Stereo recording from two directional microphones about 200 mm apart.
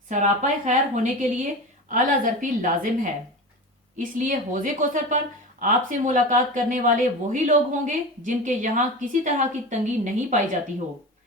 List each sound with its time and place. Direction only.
0.1 s a woman's voice: 35° right (ahead or behind)